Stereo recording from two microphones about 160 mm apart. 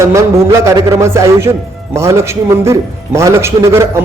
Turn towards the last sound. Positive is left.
turn(degrees=-15)  # may be behind; listen again after turning